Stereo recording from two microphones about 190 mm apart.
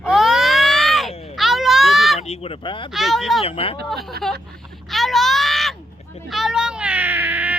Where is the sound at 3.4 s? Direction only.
30° left (ahead or behind).